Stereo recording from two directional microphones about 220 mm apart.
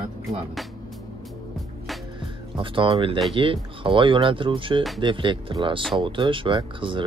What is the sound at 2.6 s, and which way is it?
Speech, 25° right (ahead or behind).